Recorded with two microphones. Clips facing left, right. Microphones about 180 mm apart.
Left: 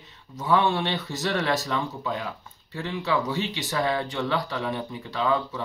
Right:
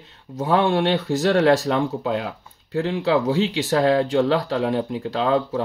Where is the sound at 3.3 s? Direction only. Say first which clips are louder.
Right 8 dB; 85° right; by 5.6 s 65° right (ahead or behind).